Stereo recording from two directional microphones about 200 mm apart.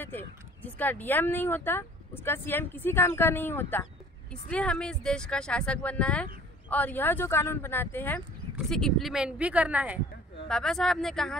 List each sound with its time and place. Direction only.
0.6 s speech: 10° left (ahead or behind)